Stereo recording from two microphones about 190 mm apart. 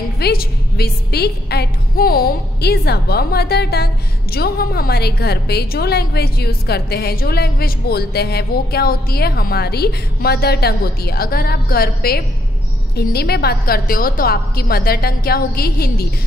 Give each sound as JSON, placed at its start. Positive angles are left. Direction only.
{"t": 0.2, "sound": "a woman's voice", "side_deg": 55}